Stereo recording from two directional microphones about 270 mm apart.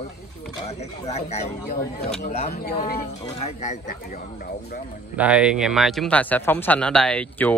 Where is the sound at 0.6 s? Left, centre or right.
Left.